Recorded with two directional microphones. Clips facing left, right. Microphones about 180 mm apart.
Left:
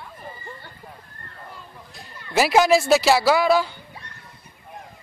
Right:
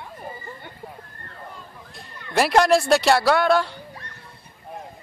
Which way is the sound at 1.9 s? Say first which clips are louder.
Right 1 dB; centre (ahead or behind).